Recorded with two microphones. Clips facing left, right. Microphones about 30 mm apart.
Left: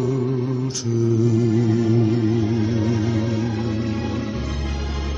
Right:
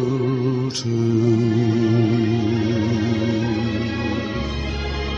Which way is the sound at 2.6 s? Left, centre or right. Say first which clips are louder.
Right 1 dB; right.